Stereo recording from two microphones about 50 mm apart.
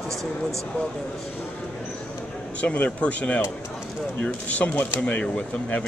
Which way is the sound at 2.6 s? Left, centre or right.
Left.